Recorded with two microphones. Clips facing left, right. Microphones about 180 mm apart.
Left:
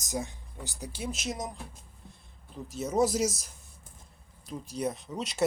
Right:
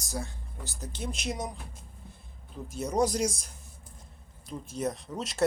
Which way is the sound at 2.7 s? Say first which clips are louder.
Left 1 dB; centre (ahead or behind).